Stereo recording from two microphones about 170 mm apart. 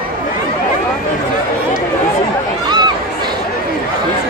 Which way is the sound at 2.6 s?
25° right (ahead or behind).